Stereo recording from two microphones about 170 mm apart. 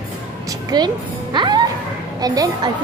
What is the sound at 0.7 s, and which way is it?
A woman's voice, 25° right (ahead or behind).